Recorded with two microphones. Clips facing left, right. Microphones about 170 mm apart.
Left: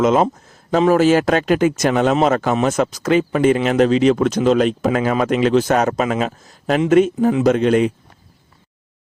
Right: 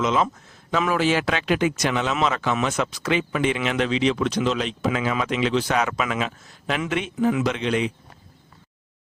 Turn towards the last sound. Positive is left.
turn(degrees=45)  # may be behind; listen again after turning